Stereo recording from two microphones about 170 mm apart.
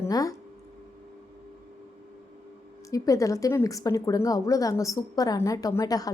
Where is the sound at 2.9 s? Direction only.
20° left (ahead or behind).